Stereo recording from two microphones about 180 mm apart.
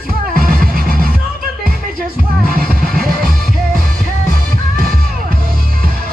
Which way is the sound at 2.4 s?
55° right (ahead or behind).